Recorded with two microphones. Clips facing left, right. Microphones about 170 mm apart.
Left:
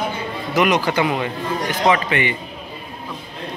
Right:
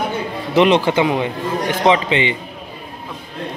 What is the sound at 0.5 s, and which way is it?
A man's voice, 30° right (ahead or behind).